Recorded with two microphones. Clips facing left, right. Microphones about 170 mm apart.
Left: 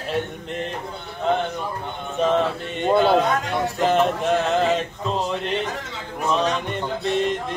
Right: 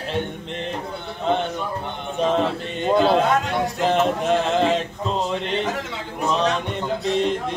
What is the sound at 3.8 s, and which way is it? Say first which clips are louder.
Music: left 1 dB; centre (ahead or behind).